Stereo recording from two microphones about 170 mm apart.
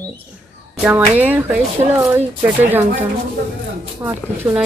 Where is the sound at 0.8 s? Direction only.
10° right (ahead or behind).